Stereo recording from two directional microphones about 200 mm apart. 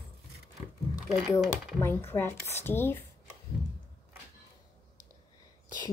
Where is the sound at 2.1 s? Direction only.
10° left (ahead or behind).